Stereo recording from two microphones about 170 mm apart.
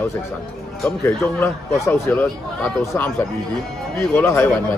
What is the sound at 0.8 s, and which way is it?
A man's voice, 15° left (ahead or behind).